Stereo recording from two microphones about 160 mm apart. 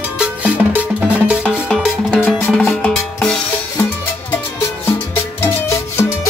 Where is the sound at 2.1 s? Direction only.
15° left (ahead or behind).